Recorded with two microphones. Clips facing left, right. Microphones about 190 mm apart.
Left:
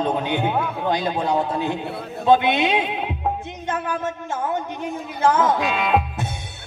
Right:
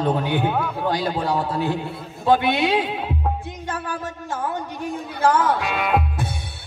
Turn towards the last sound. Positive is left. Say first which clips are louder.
# left 1 dB
turn(degrees=20)  # may be behind; listen again after turning